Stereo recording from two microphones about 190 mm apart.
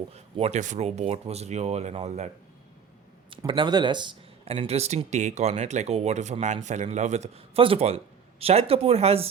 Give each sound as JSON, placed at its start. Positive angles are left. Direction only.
{"t": 0.1, "sound": "speech", "side_deg": -35}